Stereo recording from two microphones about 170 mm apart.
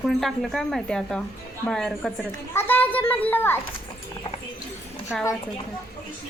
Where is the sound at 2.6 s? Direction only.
10° left (ahead or behind).